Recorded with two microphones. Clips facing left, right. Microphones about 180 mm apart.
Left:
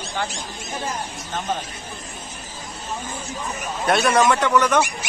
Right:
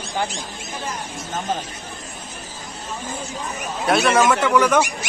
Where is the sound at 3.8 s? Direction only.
Centre (ahead or behind).